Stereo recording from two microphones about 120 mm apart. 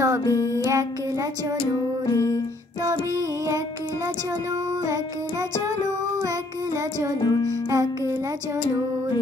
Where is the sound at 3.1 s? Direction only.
30° right (ahead or behind).